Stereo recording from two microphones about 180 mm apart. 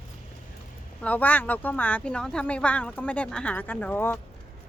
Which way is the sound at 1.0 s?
10° left (ahead or behind).